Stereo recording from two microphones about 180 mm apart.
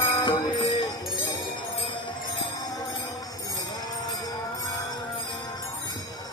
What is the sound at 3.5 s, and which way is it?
Music, 20° left (ahead or behind).